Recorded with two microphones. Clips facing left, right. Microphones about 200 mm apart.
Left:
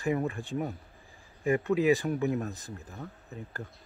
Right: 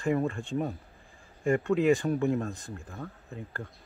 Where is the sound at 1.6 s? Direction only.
5° left (ahead or behind).